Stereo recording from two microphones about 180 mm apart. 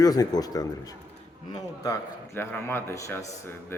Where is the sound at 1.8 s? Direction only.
15° left (ahead or behind).